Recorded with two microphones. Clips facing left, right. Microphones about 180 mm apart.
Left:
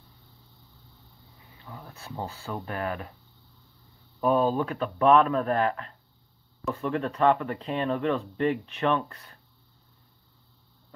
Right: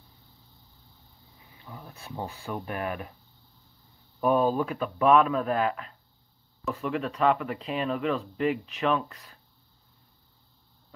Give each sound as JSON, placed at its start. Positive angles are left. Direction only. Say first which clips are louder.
{"t": 1.6, "sound": "speech", "louder": "left 1 dB", "side_deg": -15}
{"t": 4.2, "sound": "speech", "louder": "even", "side_deg": -10}